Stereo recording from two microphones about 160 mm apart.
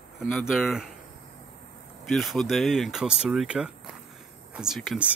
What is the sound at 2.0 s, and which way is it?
Speech, centre (ahead or behind).